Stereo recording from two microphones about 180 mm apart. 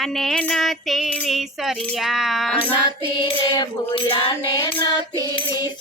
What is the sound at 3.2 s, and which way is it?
Music, 25° left (ahead or behind).